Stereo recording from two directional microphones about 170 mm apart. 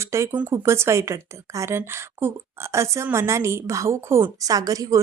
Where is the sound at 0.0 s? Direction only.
15° right (ahead or behind).